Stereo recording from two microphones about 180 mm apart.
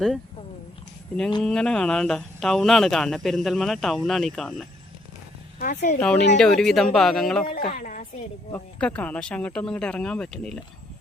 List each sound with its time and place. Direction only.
1.4 s speech: 5° left (ahead or behind)
5.5 s a woman's voice: 50° left (ahead or behind)
6.0 s a woman's voice: 5° left (ahead or behind)
7.5 s a woman's voice: 50° left (ahead or behind)
9.0 s speech: 5° left (ahead or behind)